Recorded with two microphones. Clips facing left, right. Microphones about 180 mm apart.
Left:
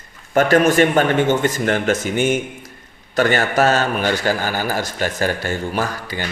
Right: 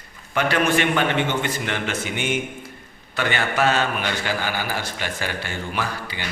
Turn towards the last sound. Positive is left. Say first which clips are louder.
# left 5 dB
turn(degrees=45)  # may be behind; listen again after turning